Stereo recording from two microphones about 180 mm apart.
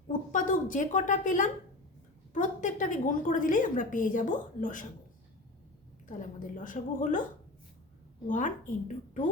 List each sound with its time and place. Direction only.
0.1 s a sound: 45° left (ahead or behind)
2.3 s a woman's voice: 45° left (ahead or behind)
6.1 s a woman's voice: 50° left (ahead or behind)
8.3 s a woman's voice: 45° left (ahead or behind)